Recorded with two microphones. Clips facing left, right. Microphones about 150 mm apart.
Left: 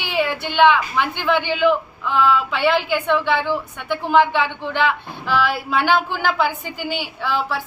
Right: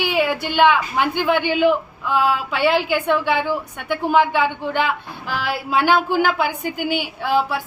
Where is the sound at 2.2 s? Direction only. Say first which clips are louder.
Left 2 dB; 10° right (ahead or behind).